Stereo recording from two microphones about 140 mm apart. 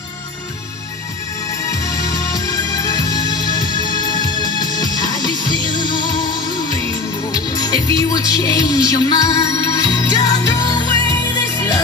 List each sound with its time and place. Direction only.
1.6 s music: 25° left (ahead or behind)